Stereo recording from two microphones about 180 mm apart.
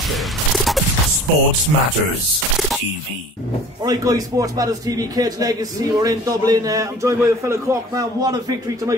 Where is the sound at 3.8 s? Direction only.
20° right (ahead or behind).